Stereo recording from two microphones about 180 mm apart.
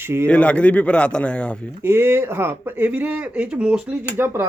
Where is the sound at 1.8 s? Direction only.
15° right (ahead or behind).